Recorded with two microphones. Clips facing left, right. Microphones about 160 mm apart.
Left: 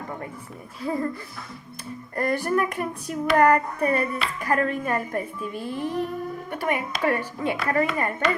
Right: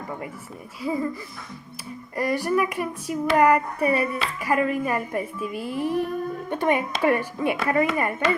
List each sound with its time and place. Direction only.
0.8 s speech: 5° right (ahead or behind)
2.1 s speech: 5° right (ahead or behind)
6.5 s speech: 20° right (ahead or behind)